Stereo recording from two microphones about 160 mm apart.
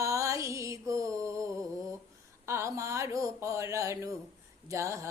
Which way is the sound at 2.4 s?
15° right (ahead or behind).